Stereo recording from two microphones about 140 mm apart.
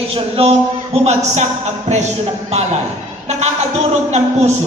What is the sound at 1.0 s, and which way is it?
Speech, 55° right (ahead or behind).